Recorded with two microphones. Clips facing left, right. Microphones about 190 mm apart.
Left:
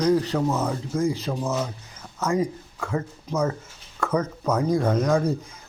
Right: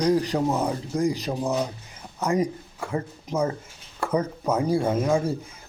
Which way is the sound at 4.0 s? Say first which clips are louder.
Left 1 dB; 15° right (ahead or behind).